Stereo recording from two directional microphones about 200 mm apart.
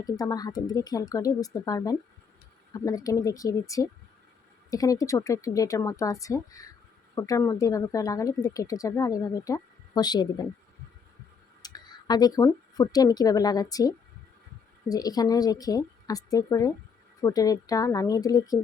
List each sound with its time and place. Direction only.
0.0 s speech: 20° left (ahead or behind)
11.6 s speech: 20° left (ahead or behind)